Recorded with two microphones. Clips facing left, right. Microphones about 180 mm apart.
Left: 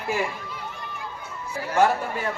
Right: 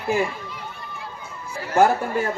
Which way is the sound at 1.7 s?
45° right (ahead or behind).